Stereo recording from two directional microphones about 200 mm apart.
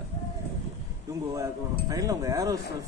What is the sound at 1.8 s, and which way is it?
Speech, 15° right (ahead or behind).